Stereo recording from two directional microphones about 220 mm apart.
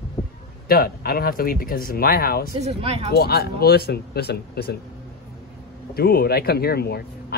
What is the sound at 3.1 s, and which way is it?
Speech, 45° left (ahead or behind).